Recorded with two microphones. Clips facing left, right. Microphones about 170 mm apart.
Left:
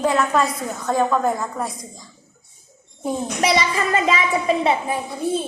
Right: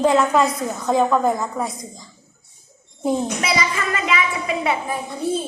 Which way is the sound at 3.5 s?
30° left (ahead or behind).